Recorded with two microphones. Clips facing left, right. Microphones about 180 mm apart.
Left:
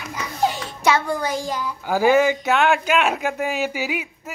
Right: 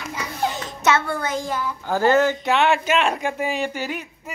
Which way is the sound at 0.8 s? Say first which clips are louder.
Left 1 dB; 15° left (ahead or behind).